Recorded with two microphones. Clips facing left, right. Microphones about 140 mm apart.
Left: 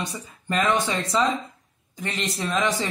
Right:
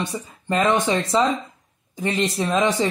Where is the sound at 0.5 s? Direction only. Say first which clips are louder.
Right 4 dB; 25° right (ahead or behind).